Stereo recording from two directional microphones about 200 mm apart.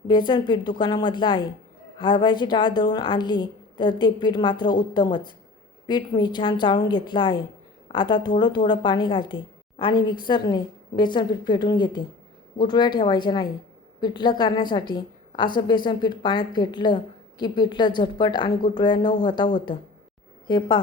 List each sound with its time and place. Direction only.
0.1 s a woman's voice: 25° left (ahead or behind)